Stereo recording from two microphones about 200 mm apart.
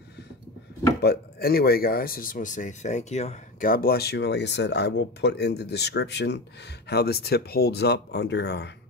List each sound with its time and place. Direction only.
1.0 s speech: 50° left (ahead or behind)